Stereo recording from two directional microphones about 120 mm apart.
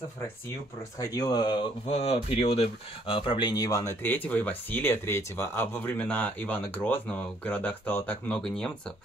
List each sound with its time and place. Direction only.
0.9 s speech: 30° left (ahead or behind)
2.0 s speech: 55° left (ahead or behind); by 8.9 s 5° left (ahead or behind)